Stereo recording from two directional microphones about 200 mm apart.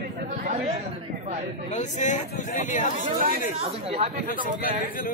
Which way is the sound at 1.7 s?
35° left (ahead or behind).